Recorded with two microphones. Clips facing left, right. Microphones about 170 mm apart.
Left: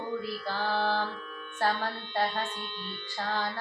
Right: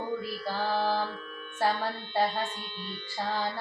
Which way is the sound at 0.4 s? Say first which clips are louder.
Right 2 dB; 10° right (ahead or behind).